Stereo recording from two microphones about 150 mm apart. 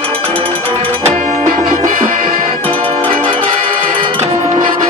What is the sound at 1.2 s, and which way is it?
Music, 55° right (ahead or behind).